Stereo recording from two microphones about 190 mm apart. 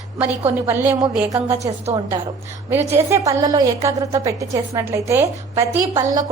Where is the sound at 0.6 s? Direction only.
5° right (ahead or behind).